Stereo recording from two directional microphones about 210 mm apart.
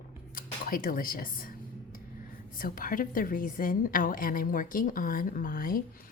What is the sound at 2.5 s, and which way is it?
A woman's voice, 40° left (ahead or behind).